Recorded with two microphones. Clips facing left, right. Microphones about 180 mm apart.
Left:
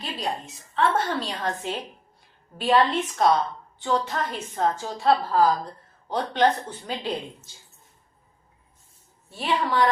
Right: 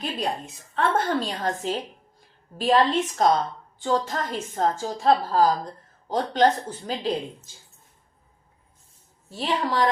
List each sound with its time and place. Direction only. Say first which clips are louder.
0.0 s a woman's voice: right 2 dB; 55° right (ahead or behind)
9.5 s a woman's voice: left 1 dB; 30° right (ahead or behind)